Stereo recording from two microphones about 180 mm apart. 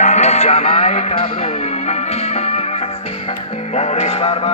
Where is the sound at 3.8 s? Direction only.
30° left (ahead or behind).